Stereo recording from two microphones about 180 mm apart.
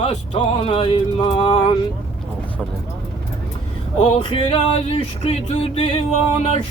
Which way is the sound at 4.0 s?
30° left (ahead or behind).